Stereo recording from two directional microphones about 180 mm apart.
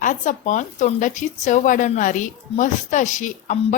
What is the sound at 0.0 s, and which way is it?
Speech, 45° left (ahead or behind).